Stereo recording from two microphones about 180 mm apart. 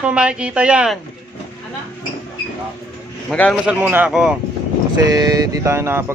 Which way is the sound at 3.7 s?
10° right (ahead or behind).